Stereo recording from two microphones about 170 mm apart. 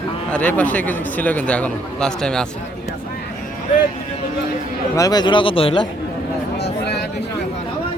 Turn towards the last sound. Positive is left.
turn(degrees=80)